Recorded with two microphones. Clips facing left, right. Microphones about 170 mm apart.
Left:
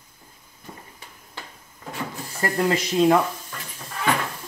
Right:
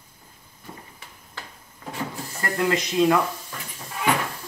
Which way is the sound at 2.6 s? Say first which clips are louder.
Left 1 dB; 30° left (ahead or behind).